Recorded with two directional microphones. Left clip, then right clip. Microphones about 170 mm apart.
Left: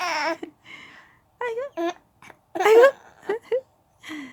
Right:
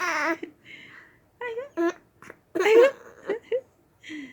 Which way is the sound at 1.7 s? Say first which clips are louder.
Right 1 dB; 10° left (ahead or behind).